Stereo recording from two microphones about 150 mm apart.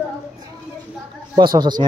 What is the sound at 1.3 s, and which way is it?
Speech, 30° right (ahead or behind).